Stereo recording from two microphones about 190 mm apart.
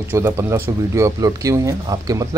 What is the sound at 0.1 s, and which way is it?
Speech, 15° right (ahead or behind).